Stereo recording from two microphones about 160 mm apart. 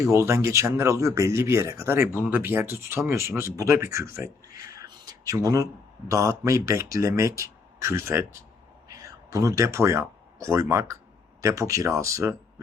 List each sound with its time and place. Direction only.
0.0 s speech: 20° right (ahead or behind)